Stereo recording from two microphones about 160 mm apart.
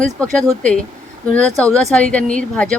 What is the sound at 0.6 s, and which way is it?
Speech, 5° left (ahead or behind).